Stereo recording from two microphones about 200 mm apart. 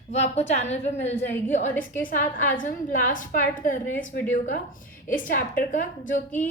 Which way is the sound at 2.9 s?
40° left (ahead or behind).